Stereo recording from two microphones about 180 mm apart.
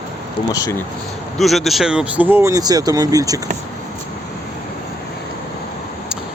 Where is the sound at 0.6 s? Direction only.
15° left (ahead or behind).